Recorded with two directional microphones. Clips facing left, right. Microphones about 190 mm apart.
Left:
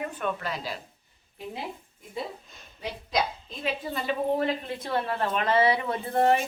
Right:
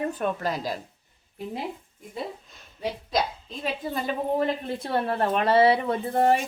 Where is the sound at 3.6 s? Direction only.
40° right (ahead or behind).